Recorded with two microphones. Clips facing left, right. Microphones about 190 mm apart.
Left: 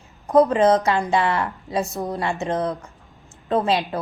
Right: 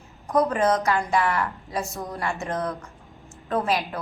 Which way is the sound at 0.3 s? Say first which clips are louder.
Left 6 dB; 25° left (ahead or behind).